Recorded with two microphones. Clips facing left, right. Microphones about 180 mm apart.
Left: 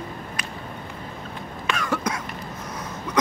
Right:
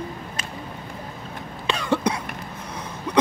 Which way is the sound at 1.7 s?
30° right (ahead or behind).